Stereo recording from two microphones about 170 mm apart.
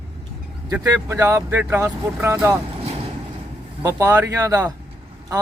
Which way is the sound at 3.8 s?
15° right (ahead or behind).